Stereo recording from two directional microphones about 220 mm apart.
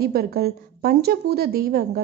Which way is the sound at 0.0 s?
45° right (ahead or behind).